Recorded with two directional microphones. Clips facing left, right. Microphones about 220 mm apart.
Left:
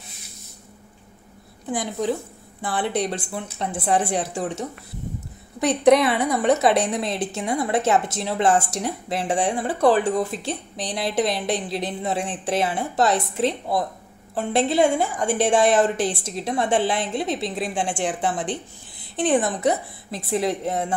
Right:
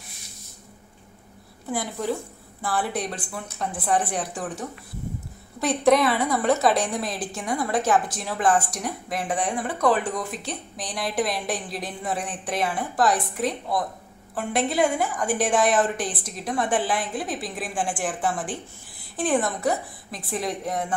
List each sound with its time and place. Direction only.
1.7 s a woman's voice: 15° left (ahead or behind)